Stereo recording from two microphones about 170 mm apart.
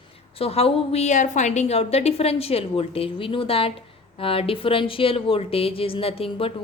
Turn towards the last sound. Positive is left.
turn(degrees=35)  # may be behind; listen again after turning